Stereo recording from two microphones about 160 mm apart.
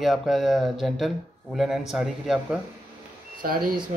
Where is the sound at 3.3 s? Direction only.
60° right (ahead or behind).